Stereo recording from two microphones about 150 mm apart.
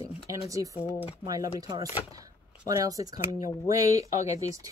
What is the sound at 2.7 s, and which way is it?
Speech, 25° right (ahead or behind).